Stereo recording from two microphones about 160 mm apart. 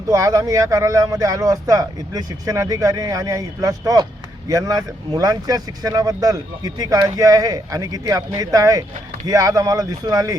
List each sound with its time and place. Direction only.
0.1 s speech: 20° right (ahead or behind)